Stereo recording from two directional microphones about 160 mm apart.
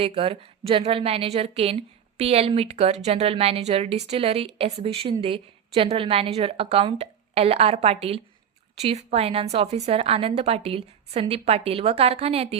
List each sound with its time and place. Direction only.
0.0 s a woman's voice: 35° right (ahead or behind)